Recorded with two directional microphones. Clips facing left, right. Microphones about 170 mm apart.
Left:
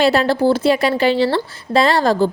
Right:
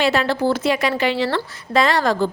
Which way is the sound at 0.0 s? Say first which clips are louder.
Left 4 dB; 35° left (ahead or behind).